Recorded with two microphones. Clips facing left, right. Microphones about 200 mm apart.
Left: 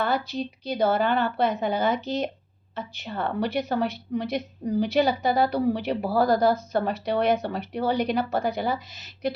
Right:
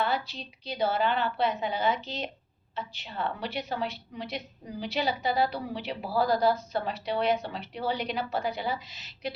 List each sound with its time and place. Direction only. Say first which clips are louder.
0.0 s a woman's voice: left 4 dB; 45° left (ahead or behind)